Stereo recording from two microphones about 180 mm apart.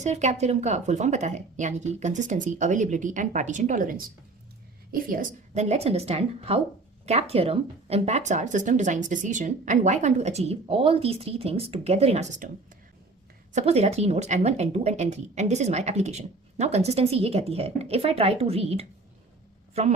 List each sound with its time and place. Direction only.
0.0 s a woman's voice: 40° right (ahead or behind)
13.5 s speech: 35° right (ahead or behind)